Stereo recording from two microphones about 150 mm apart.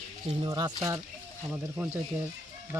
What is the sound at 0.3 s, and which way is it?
Speech, 30° right (ahead or behind).